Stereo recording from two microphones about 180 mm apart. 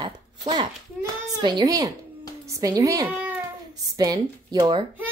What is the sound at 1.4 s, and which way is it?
A woman's voice, 25° right (ahead or behind).